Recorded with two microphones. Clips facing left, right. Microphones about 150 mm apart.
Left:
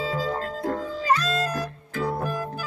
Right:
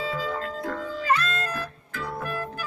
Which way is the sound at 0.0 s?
35° left (ahead or behind).